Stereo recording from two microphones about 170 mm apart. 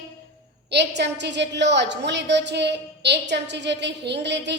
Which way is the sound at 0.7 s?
90° right.